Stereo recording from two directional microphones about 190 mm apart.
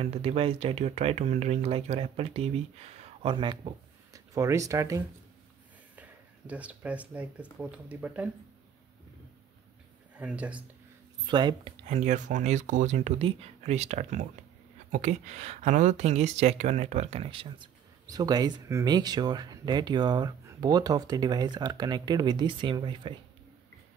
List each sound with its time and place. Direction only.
0.0 s speech: 30° right (ahead or behind); by 8.3 s 5° right (ahead or behind)
10.1 s speech: 5° right (ahead or behind)
11.2 s speech: 25° right (ahead or behind)
11.8 s speech: 35° right (ahead or behind)